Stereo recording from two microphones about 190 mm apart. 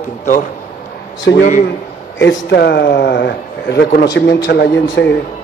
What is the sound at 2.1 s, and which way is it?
A man's voice, 65° left (ahead or behind).